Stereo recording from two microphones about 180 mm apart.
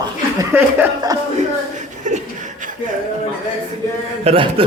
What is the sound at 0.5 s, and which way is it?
Speech, 15° right (ahead or behind).